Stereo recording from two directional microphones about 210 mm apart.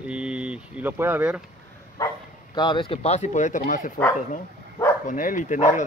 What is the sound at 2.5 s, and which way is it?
Speech, 20° left (ahead or behind).